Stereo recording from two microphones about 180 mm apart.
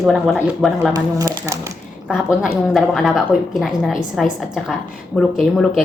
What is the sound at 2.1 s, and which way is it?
Speech, 5° right (ahead or behind).